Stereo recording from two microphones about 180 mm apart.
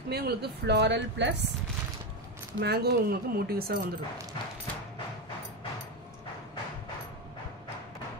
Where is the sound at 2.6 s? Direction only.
60° right (ahead or behind).